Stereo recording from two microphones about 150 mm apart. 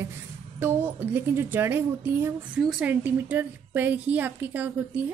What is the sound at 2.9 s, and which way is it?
A woman's voice, 10° right (ahead or behind).